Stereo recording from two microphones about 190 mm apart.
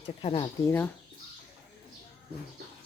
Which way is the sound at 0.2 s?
30° left (ahead or behind).